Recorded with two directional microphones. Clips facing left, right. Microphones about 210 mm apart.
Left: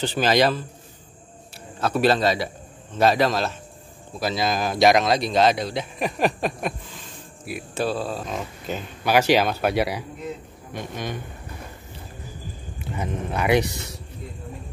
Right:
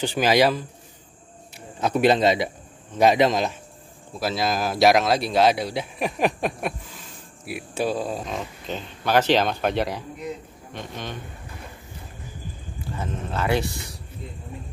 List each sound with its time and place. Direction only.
0.0 s speech: 10° right (ahead or behind)
1.8 s a man's voice: 20° right (ahead or behind)
4.2 s speech: centre (ahead or behind)
8.3 s speech: 5° left (ahead or behind)
12.7 s speech: 20° left (ahead or behind)